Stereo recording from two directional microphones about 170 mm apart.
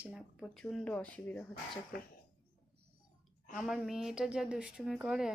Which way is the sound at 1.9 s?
55° left (ahead or behind).